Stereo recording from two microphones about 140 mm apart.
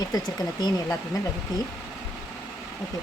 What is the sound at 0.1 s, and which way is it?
Speech, 25° left (ahead or behind).